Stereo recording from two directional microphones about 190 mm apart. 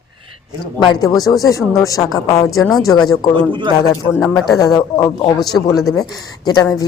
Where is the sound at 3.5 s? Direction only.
25° right (ahead or behind).